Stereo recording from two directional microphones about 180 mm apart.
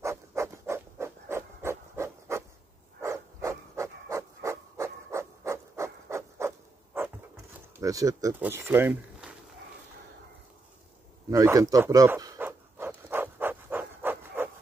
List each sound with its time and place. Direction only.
0.0 s a sound: 15° right (ahead or behind)
7.8 s speech: 20° right (ahead or behind)
11.2 s pant: 20° right (ahead or behind)